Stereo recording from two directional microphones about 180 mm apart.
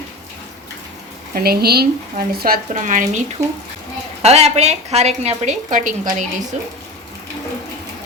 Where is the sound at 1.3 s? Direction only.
55° right (ahead or behind).